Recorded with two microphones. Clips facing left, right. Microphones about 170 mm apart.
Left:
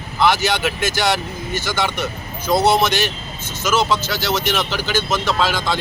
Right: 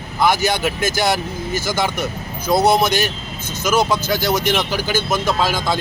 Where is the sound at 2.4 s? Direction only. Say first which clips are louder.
Right 1 dB; 10° right (ahead or behind).